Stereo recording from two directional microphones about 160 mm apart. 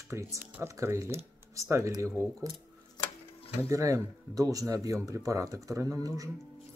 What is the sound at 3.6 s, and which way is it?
Speech, 20° right (ahead or behind).